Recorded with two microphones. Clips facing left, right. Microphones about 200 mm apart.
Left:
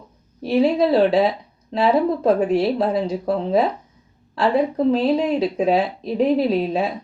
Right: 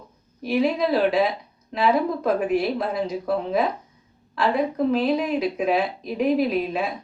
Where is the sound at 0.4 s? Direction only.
30° left (ahead or behind).